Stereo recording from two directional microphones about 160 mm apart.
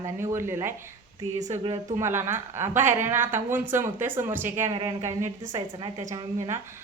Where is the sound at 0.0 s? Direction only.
15° right (ahead or behind).